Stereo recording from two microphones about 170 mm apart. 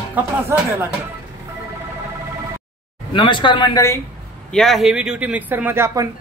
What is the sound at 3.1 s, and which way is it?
Speech, 30° left (ahead or behind).